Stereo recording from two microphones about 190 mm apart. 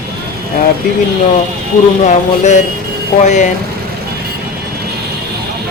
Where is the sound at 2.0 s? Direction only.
40° left (ahead or behind).